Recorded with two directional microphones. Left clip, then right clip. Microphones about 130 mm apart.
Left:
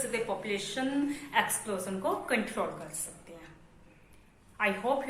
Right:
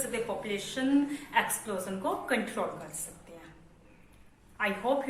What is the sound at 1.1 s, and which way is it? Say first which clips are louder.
A woman's voice: even; 25° left (ahead or behind).